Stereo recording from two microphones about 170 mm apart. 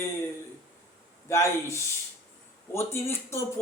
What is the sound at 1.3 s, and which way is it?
Speech, 15° left (ahead or behind).